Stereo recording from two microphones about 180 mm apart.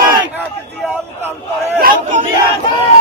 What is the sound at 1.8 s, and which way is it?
Speech, 50° right (ahead or behind).